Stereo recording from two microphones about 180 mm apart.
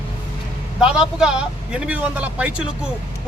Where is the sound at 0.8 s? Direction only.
5° right (ahead or behind).